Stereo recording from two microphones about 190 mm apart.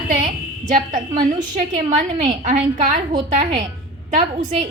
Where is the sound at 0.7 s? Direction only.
40° right (ahead or behind).